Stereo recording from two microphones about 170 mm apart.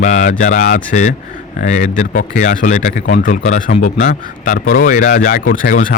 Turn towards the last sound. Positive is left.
turn(degrees=55)  # may be behind; listen again after turning